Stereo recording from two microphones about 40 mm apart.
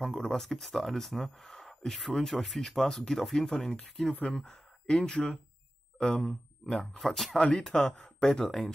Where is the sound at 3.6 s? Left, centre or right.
Left.